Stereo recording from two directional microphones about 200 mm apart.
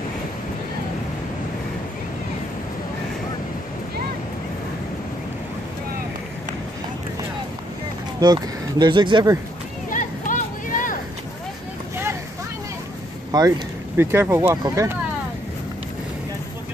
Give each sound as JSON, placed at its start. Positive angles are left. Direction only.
{"t": 8.2, "sound": "speech", "side_deg": -20}
{"t": 9.8, "sound": "a sound", "side_deg": 40}
{"t": 13.3, "sound": "speech", "side_deg": -20}